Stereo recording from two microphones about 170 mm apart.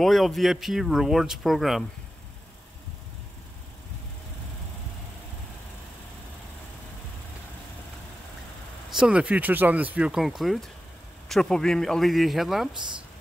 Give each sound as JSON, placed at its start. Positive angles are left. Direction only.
{"t": 0.0, "sound": "speech", "side_deg": 0}
{"t": 8.9, "sound": "speech", "side_deg": -5}
{"t": 12.7, "sound": "speech", "side_deg": -25}